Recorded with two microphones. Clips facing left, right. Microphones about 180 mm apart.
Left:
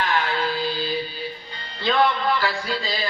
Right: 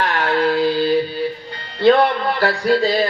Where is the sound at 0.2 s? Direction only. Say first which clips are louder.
Right 8 dB; 65° right (ahead or behind).